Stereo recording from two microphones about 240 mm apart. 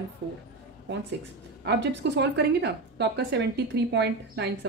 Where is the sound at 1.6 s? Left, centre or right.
Right.